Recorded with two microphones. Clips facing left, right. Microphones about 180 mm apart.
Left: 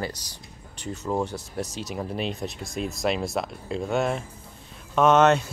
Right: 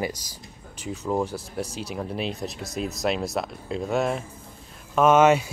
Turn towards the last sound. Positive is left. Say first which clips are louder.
# right 1 dB
turn(degrees=-10)  # may be behind; listen again after turning